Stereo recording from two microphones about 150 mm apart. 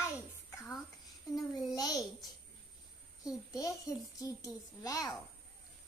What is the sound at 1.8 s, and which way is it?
Speech, 25° left (ahead or behind).